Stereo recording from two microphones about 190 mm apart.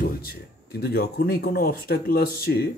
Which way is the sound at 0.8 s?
55° left (ahead or behind).